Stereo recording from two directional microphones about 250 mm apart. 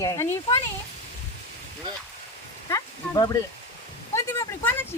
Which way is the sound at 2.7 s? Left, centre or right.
Centre.